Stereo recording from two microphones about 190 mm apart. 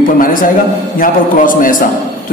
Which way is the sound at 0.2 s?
45° left (ahead or behind).